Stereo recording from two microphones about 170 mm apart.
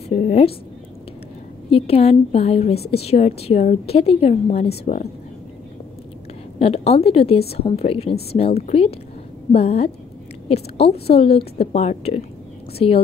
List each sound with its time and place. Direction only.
0.1 s a sound: 40° left (ahead or behind)
1.7 s a woman's voice: 35° left (ahead or behind)
6.6 s a woman's voice: 35° left (ahead or behind)